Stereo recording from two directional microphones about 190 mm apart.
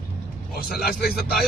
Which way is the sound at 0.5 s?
50° left (ahead or behind).